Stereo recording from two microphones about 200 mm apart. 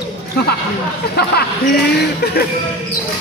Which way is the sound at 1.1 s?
55° left (ahead or behind).